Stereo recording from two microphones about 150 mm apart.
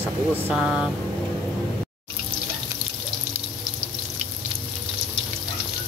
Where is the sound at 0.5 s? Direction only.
5° right (ahead or behind).